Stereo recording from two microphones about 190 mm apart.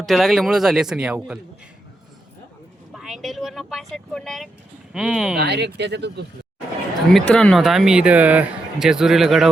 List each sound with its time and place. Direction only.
0.0 s speech: centre (ahead or behind)
2.9 s speech: centre (ahead or behind)
5.4 s speech: 60° right (ahead or behind)
7.1 s speech: 5° left (ahead or behind)